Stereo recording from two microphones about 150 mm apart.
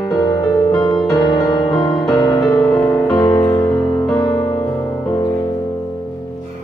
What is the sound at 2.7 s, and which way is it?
Music, 10° left (ahead or behind).